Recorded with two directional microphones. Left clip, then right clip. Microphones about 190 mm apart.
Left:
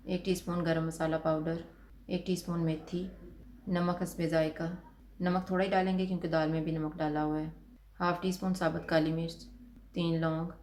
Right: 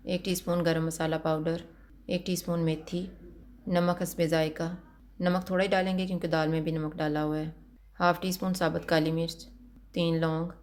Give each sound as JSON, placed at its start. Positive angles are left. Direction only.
{"t": 0.0, "sound": "speech", "side_deg": -45}